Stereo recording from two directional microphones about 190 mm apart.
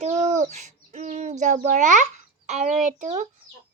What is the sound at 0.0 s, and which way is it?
Owl, 35° right (ahead or behind).